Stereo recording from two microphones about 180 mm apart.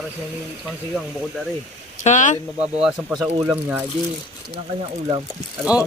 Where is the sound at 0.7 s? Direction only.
Centre (ahead or behind).